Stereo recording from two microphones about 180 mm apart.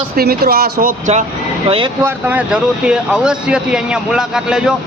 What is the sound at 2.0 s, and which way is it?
Speech, 10° right (ahead or behind).